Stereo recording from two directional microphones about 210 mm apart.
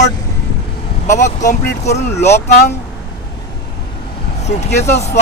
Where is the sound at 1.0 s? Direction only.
35° left (ahead or behind).